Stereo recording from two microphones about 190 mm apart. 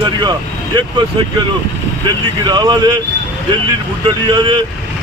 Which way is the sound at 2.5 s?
20° right (ahead or behind).